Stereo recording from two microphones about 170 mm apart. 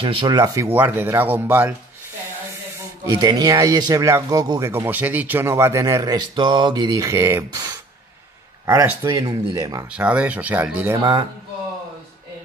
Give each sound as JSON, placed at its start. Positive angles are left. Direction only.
{"t": 0.0, "sound": "speech", "side_deg": -30}
{"t": 0.4, "sound": "speech", "side_deg": -20}
{"t": 3.0, "sound": "speech", "side_deg": -20}
{"t": 9.8, "sound": "speech", "side_deg": -5}
{"t": 11.0, "sound": "speech", "side_deg": -25}